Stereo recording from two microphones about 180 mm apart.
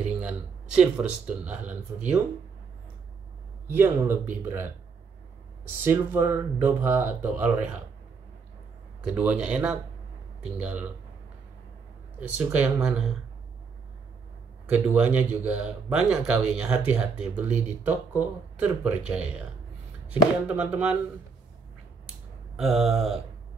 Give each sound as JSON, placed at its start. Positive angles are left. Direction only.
{"t": 0.2, "sound": "speech", "side_deg": -5}
{"t": 3.6, "sound": "speech", "side_deg": -10}
{"t": 5.9, "sound": "speech", "side_deg": -15}
{"t": 9.0, "sound": "speech", "side_deg": -10}
{"t": 12.4, "sound": "speech", "side_deg": -10}
{"t": 14.7, "sound": "speech", "side_deg": -10}
{"t": 22.6, "sound": "speech", "side_deg": 0}